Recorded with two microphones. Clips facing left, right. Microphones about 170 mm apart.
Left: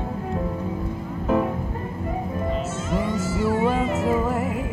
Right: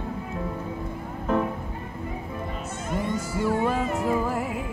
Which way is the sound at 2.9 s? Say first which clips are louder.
Left 2 dB; 55° right (ahead or behind).